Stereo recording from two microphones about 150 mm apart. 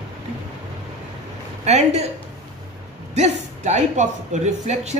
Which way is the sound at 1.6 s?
45° right (ahead or behind).